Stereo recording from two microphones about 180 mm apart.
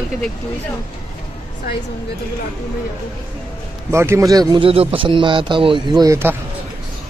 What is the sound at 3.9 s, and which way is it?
Speech, 15° right (ahead or behind).